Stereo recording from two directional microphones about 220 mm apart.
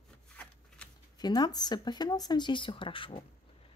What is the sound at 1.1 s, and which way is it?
Speech, 20° left (ahead or behind).